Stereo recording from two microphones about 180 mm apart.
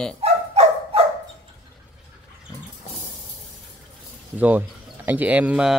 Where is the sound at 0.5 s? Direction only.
30° right (ahead or behind).